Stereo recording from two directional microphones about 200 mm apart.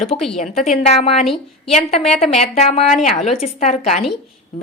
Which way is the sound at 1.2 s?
Centre (ahead or behind).